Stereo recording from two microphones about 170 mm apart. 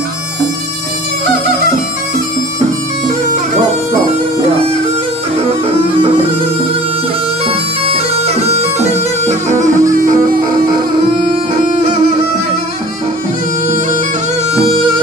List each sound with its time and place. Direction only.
5.5 s music: 35° right (ahead or behind)
7.4 s bagpipes: 35° right (ahead or behind)
9.7 s music: 20° right (ahead or behind)
9.9 s music: 55° right (ahead or behind)